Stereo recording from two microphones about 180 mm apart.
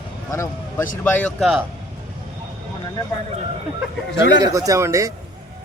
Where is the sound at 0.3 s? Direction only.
15° left (ahead or behind).